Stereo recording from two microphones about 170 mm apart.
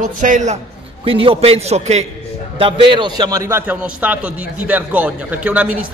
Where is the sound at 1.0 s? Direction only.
30° right (ahead or behind).